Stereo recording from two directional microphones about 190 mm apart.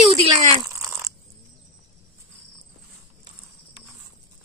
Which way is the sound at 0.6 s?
15° right (ahead or behind).